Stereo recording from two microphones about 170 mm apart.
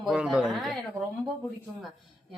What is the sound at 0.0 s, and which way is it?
Speech, 5° right (ahead or behind).